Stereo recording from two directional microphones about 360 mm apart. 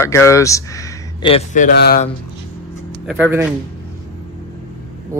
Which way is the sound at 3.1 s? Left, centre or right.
Centre.